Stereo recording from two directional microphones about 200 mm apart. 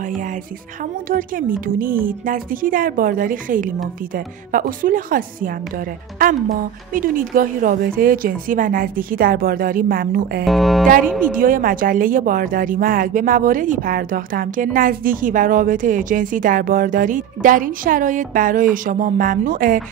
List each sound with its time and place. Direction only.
1.0 s a woman's voice: 45° right (ahead or behind)
10.4 s speech: centre (ahead or behind)
11.3 s a woman's voice: 45° right (ahead or behind)